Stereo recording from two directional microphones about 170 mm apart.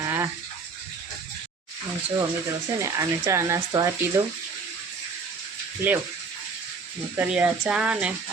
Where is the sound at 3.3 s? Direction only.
15° right (ahead or behind).